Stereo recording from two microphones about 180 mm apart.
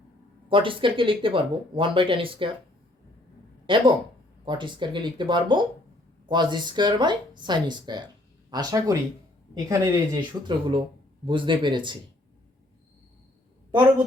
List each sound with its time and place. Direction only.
0.4 s speech: 30° right (ahead or behind)
3.7 s speech: 25° right (ahead or behind)
10.2 s speech: 25° right (ahead or behind)